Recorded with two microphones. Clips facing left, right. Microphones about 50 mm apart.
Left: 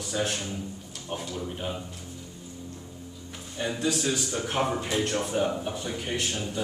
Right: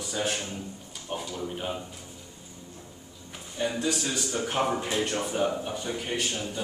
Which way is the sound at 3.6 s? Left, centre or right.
Centre.